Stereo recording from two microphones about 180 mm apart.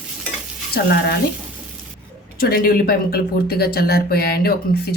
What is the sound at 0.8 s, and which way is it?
Speech, 65° left (ahead or behind).